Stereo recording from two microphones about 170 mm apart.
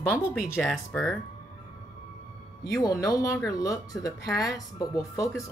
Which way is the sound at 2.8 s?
20° left (ahead or behind).